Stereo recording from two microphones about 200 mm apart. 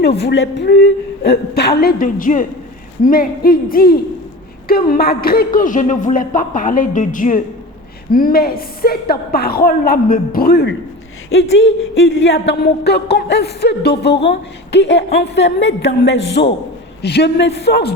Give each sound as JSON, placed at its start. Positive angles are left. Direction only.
{"t": 0.2, "sound": "speech", "side_deg": 60}
{"t": 11.3, "sound": "speech", "side_deg": 65}